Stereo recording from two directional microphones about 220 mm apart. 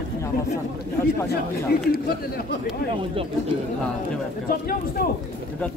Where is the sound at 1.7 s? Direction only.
45° left (ahead or behind).